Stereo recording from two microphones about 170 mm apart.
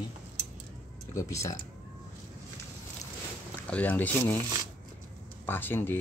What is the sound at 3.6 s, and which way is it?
Speech, 10° left (ahead or behind).